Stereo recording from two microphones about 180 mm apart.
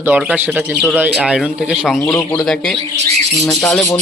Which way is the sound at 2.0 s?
10° left (ahead or behind).